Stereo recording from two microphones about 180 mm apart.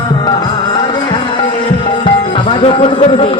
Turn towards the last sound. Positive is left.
turn(degrees=30)  # may be behind; listen again after turning